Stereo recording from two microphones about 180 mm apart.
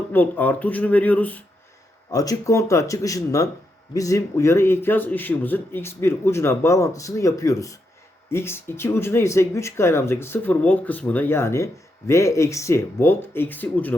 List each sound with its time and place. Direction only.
0.1 s speech: 10° left (ahead or behind)
2.0 s speech: 20° left (ahead or behind)